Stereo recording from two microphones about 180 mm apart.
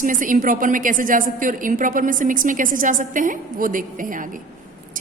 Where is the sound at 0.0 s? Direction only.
50° right (ahead or behind).